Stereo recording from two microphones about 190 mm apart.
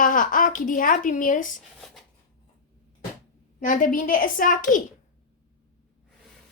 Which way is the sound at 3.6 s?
45° left (ahead or behind).